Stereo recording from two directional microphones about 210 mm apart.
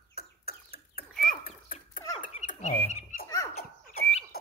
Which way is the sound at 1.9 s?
20° left (ahead or behind).